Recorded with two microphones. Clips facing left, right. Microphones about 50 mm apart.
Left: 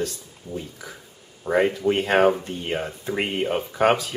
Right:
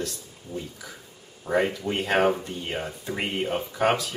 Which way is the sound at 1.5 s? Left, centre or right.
Centre.